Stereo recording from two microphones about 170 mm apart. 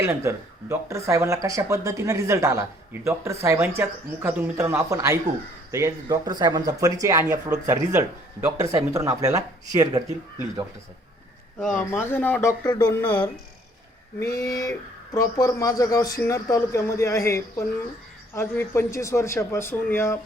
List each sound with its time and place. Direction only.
0.0 s speech: 15° right (ahead or behind)
11.9 s speech: 10° left (ahead or behind)
14.2 s speech: 20° left (ahead or behind)